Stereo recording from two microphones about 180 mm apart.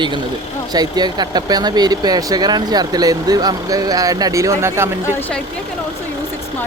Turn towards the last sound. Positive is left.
turn(degrees=-15)  # may be behind; listen again after turning